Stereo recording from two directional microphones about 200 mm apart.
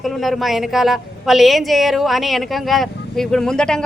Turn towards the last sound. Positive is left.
turn(degrees=5)  # may be behind; listen again after turning